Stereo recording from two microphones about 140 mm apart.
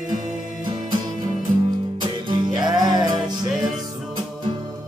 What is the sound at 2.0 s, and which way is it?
Music, 30° right (ahead or behind).